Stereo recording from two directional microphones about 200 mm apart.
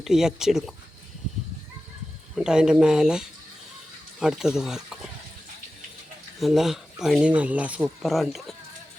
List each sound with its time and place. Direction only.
0.0 s speech: centre (ahead or behind)
2.3 s speech: 5° right (ahead or behind)
6.4 s speech: centre (ahead or behind)